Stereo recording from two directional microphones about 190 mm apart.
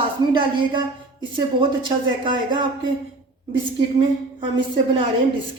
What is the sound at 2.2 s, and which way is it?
Speech, 25° right (ahead or behind).